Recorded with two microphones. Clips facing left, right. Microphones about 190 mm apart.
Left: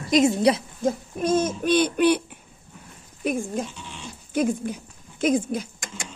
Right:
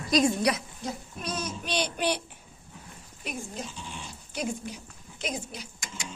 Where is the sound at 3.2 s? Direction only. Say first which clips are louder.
Left 11 dB; 50° left (ahead or behind).